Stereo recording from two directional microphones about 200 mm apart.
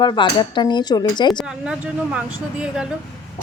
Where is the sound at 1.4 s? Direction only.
5° right (ahead or behind).